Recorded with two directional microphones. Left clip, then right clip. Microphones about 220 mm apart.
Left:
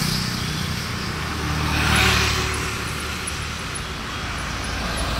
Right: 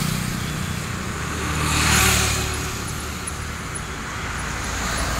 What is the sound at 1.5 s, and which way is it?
Vehicle, 40° left (ahead or behind).